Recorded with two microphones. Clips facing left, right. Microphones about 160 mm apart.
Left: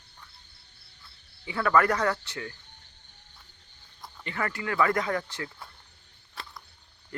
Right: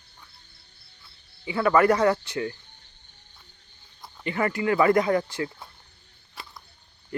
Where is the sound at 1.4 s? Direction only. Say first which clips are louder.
Right 4 dB; 10° right (ahead or behind).